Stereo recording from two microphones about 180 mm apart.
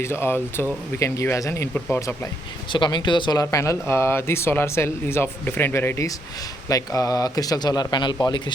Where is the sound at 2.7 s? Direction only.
25° left (ahead or behind).